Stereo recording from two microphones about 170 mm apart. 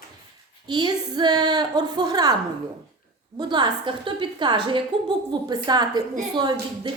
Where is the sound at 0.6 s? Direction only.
25° right (ahead or behind).